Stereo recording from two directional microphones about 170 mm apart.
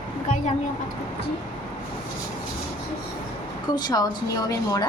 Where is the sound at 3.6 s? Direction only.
25° left (ahead or behind).